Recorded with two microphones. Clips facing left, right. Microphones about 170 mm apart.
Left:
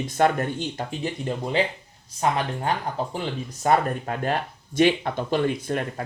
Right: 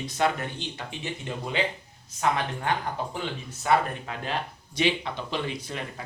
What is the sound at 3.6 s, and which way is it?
Speech, 50° left (ahead or behind).